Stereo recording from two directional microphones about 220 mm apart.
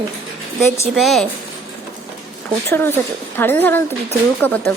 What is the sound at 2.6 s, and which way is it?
Speech, 10° left (ahead or behind).